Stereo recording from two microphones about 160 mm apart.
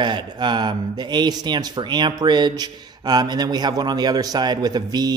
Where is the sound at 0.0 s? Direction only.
30° right (ahead or behind).